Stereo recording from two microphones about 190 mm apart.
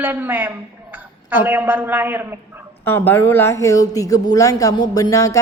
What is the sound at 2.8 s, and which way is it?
Speech, 10° left (ahead or behind).